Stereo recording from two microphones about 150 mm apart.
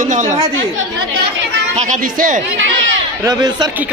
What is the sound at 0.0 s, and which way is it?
Speech, 55° right (ahead or behind).